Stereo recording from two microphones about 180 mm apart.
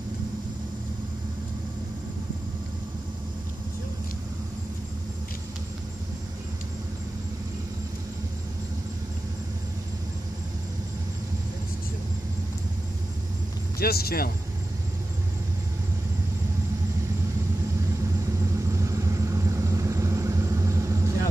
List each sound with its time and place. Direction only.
13.7 s speech: 60° left (ahead or behind)
18.7 s vehicle: 15° right (ahead or behind)